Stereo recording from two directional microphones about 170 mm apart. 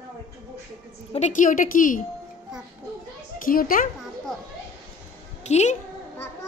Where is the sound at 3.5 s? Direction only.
55° left (ahead or behind).